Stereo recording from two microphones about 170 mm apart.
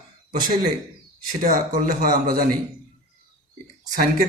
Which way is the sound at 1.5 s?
55° right (ahead or behind).